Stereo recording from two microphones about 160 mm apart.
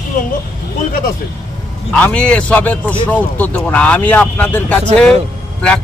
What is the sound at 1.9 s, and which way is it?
A man's voice, 5° left (ahead or behind).